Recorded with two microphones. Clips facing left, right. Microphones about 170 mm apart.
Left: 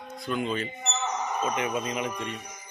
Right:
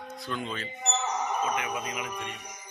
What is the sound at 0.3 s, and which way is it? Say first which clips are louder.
Speech: left 6 dB; 15° left (ahead or behind).